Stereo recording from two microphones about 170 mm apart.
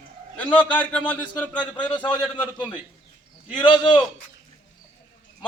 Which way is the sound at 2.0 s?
25° left (ahead or behind).